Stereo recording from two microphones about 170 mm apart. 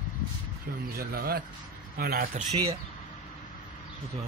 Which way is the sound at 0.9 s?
65° right (ahead or behind).